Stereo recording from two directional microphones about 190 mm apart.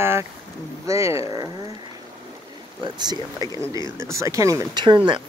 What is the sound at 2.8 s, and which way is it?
Speech, 20° right (ahead or behind).